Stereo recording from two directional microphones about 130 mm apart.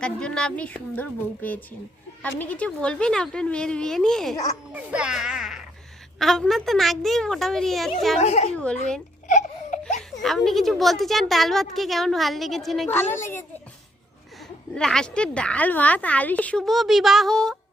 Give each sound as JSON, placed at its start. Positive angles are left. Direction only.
{"t": 0.0, "sound": "a woman's voice", "side_deg": 5}
{"t": 4.7, "sound": "a woman's voice", "side_deg": -10}
{"t": 8.2, "sound": "speech", "side_deg": 60}
{"t": 9.2, "sound": "a sound", "side_deg": 70}
{"t": 10.2, "sound": "a woman's voice", "side_deg": 0}
{"t": 12.9, "sound": "a woman's voice", "side_deg": 15}
{"t": 14.8, "sound": "a woman's voice", "side_deg": 5}